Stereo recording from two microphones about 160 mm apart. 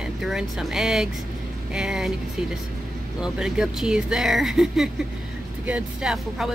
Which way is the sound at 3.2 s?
5° right (ahead or behind).